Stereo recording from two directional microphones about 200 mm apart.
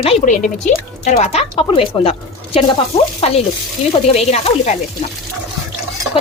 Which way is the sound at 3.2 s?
30° left (ahead or behind).